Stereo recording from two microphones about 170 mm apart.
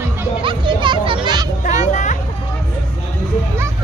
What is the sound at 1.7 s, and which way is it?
Music, 45° left (ahead or behind).